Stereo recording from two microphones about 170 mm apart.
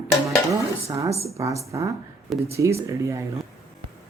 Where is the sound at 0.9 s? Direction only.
20° right (ahead or behind).